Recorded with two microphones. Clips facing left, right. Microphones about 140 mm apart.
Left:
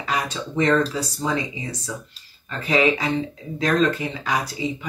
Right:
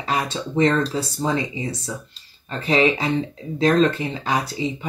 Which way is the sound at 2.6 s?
30° right (ahead or behind).